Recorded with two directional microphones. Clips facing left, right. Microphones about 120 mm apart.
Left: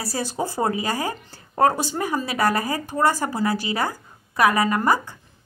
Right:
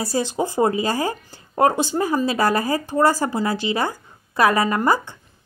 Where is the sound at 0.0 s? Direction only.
25° right (ahead or behind).